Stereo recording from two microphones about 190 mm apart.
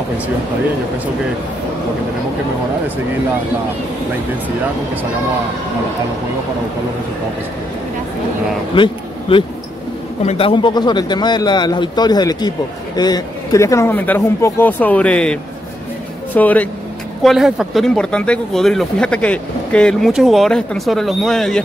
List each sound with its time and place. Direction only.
8.7 s a man's voice: 25° left (ahead or behind); by 15.3 s 5° left (ahead or behind)
16.3 s speech: 10° left (ahead or behind)